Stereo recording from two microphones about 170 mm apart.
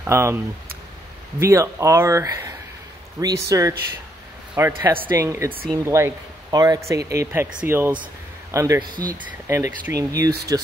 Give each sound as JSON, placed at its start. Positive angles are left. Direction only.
{"t": 0.0, "sound": "speech", "side_deg": -15}
{"t": 1.4, "sound": "speech", "side_deg": -15}